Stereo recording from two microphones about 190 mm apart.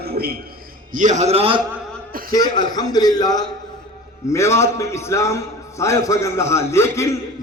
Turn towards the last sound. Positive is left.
turn(degrees=15)  # may be behind; listen again after turning